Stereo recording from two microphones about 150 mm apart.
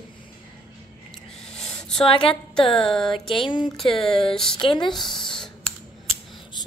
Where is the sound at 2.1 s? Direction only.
35° left (ahead or behind).